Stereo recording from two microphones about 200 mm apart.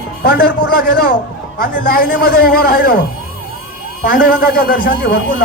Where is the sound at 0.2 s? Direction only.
50° left (ahead or behind).